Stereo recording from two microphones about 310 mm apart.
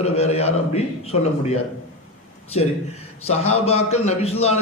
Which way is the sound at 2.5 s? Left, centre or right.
Left.